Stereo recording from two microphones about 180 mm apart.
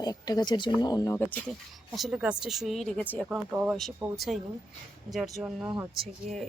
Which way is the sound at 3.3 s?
5° right (ahead or behind).